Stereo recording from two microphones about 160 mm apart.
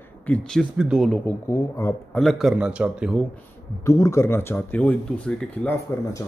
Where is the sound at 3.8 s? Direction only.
20° left (ahead or behind).